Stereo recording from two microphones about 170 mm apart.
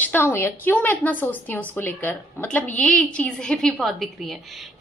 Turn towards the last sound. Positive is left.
turn(degrees=0)  # may be behind; listen again after turning